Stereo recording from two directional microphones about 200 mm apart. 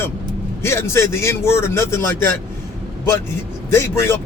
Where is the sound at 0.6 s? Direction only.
15° left (ahead or behind).